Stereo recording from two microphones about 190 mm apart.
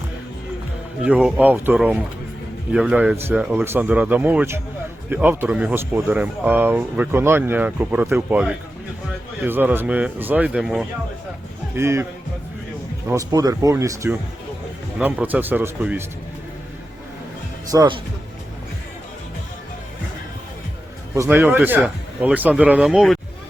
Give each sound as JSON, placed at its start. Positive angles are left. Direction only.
{"t": 1.0, "sound": "speech", "side_deg": -5}
{"t": 11.7, "sound": "speech", "side_deg": -15}
{"t": 13.1, "sound": "speech", "side_deg": -20}
{"t": 17.7, "sound": "speech", "side_deg": -20}
{"t": 21.2, "sound": "speech", "side_deg": -10}